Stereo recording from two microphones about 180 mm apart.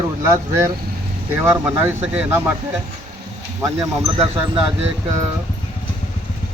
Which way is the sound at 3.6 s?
15° right (ahead or behind).